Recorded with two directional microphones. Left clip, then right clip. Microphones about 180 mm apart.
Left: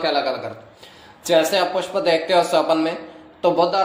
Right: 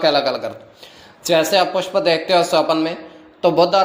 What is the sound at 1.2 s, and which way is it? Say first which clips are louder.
Speech: right 2 dB; 35° right (ahead or behind).